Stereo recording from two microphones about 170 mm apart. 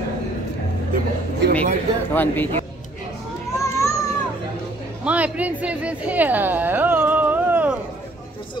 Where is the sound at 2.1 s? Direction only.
10° left (ahead or behind).